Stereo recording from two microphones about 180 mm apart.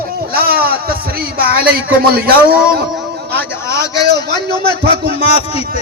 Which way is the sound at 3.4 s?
15° left (ahead or behind).